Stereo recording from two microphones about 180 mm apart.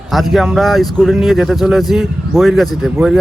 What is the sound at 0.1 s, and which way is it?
Speech, centre (ahead or behind).